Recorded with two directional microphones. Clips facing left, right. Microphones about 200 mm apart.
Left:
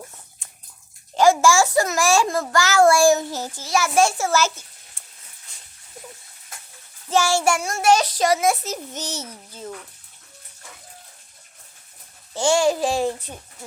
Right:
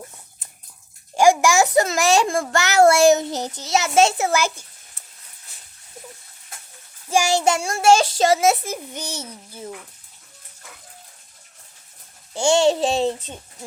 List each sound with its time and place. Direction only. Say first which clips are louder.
1.1 s a child's voice: even; 15° right (ahead or behind)
7.1 s a child's voice: right 1 dB; 15° right (ahead or behind)
8.6 s a child's voice: even; 10° right (ahead or behind)
12.3 s a child's voice: right 2 dB; 20° right (ahead or behind)